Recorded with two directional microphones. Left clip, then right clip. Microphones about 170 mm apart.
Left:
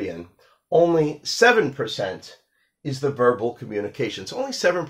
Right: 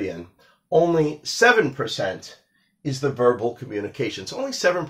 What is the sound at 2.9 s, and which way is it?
Speech, 25° left (ahead or behind).